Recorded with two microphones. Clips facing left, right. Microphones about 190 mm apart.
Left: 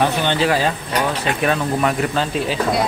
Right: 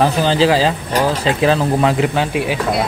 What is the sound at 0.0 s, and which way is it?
Speech, 35° right (ahead or behind).